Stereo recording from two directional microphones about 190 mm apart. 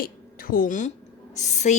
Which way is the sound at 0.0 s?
50° left (ahead or behind).